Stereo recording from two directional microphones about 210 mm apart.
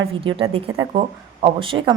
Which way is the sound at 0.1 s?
25° right (ahead or behind).